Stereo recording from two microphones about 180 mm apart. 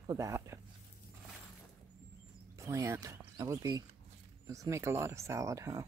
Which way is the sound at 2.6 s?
15° right (ahead or behind).